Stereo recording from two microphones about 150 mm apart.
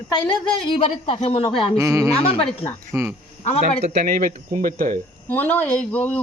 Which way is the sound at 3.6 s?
50° right (ahead or behind).